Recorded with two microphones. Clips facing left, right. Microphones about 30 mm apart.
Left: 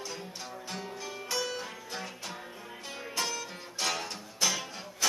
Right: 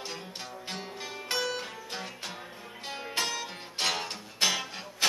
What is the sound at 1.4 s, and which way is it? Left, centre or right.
Music, right.